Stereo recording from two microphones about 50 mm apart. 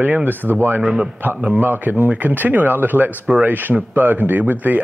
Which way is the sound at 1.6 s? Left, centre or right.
Right.